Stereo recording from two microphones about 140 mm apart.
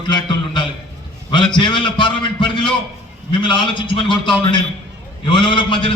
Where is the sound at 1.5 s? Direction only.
35° left (ahead or behind).